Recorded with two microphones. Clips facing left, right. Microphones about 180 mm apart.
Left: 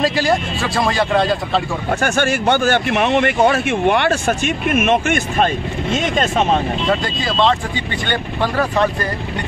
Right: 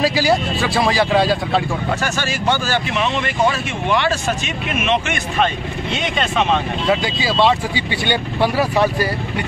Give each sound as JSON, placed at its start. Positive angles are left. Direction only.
{"t": 0.0, "sound": "a man's voice", "side_deg": -5}
{"t": 1.9, "sound": "speech", "side_deg": 50}
{"t": 6.9, "sound": "a man's voice", "side_deg": -5}